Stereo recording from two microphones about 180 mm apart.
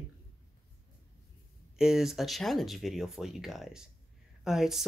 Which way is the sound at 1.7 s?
5° right (ahead or behind).